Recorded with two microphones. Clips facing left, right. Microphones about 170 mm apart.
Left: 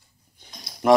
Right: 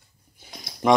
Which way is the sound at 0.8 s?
5° left (ahead or behind).